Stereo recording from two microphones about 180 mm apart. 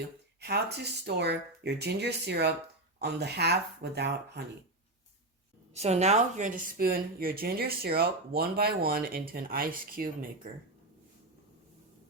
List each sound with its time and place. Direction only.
0.3 s speech: 65° right (ahead or behind)
5.7 s speech: 35° right (ahead or behind)